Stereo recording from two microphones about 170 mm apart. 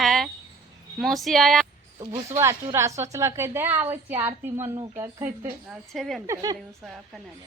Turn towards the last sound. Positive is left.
turn(degrees=-20)  # may be behind; listen again after turning